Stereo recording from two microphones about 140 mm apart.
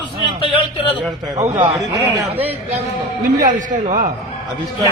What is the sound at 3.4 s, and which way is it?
Speech, 65° right (ahead or behind).